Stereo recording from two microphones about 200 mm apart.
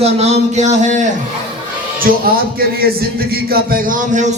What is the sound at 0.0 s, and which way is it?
A man's voice, 35° right (ahead or behind).